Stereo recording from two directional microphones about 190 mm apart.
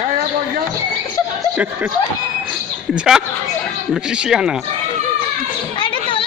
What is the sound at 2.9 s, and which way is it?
Speech, 5° right (ahead or behind).